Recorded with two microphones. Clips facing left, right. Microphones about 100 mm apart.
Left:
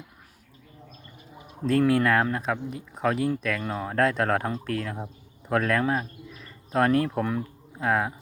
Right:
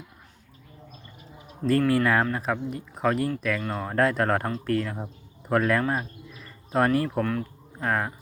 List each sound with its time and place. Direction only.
1.9 s speech: centre (ahead or behind)